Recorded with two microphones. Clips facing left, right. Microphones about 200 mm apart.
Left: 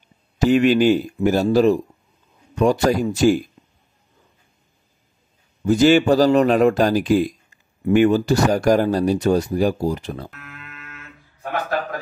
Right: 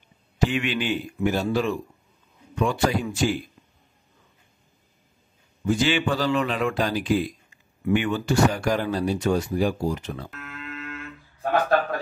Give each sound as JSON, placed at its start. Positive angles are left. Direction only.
{"t": 0.4, "sound": "speech", "side_deg": 40}
{"t": 5.7, "sound": "a man's voice", "side_deg": 40}
{"t": 10.3, "sound": "music", "side_deg": -30}